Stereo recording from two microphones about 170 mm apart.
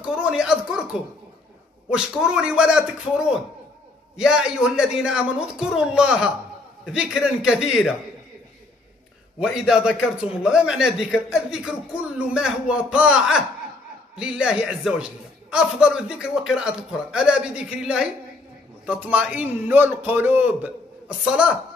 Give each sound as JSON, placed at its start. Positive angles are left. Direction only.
{"t": 0.0, "sound": "speech", "side_deg": -5}
{"t": 1.9, "sound": "a man's voice", "side_deg": -5}
{"t": 9.4, "sound": "a man's voice", "side_deg": -5}